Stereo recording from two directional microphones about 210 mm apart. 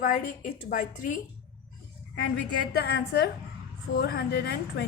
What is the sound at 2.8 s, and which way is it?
A woman's voice, 50° left (ahead or behind).